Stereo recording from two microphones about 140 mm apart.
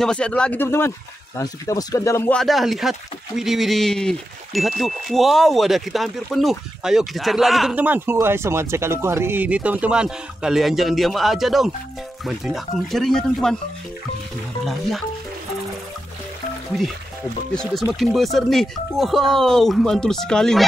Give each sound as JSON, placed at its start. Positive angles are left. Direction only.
{"t": 0.0, "sound": "speech", "side_deg": 5}
{"t": 2.3, "sound": "speech", "side_deg": 0}
{"t": 7.7, "sound": "speech", "side_deg": -10}
{"t": 14.6, "sound": "speech", "side_deg": 0}
{"t": 17.9, "sound": "speech", "side_deg": 0}